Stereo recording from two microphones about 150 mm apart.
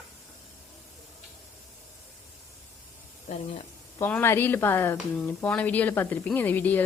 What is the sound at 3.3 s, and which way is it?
Speech, 50° left (ahead or behind).